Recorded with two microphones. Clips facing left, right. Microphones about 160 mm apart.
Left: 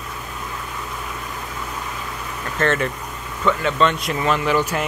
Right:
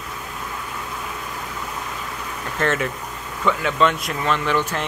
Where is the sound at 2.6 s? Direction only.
10° right (ahead or behind).